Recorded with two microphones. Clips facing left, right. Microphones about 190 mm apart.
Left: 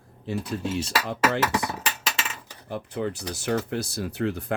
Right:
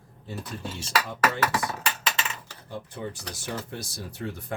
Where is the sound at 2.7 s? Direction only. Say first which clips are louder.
Left 6 dB; 75° left (ahead or behind).